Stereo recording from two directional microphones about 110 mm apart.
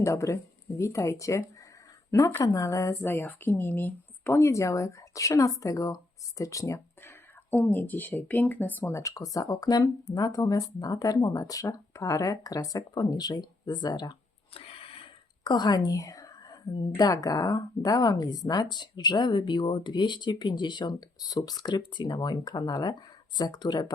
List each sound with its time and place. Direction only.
0.0 s speech: 25° left (ahead or behind)
15.4 s a woman's voice: 40° left (ahead or behind)